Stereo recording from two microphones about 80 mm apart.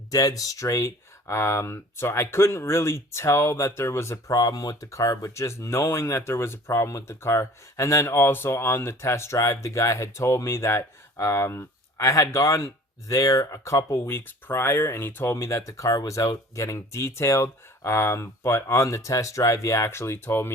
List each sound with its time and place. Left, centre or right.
0.1 s speech: left
4.3 s speech: left